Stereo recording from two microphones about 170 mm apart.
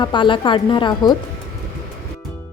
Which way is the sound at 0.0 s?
30° left (ahead or behind).